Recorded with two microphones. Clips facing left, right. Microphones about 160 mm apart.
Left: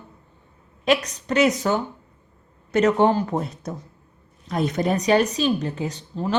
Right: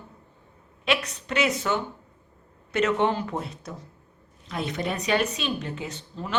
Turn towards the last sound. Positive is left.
turn(degrees=35)  # may be behind; listen again after turning